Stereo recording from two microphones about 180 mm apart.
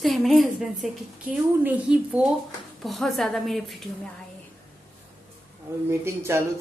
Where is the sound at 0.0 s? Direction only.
Centre (ahead or behind).